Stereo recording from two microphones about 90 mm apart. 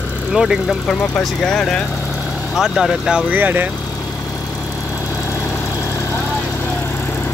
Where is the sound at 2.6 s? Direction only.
5° right (ahead or behind).